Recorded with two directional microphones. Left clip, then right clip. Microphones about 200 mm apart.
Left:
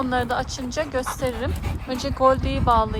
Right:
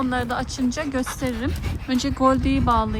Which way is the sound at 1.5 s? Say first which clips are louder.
Left 1 dB; 40° left (ahead or behind).